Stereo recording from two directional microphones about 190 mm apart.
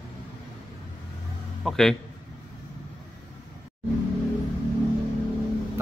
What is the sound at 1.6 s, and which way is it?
Speech, centre (ahead or behind).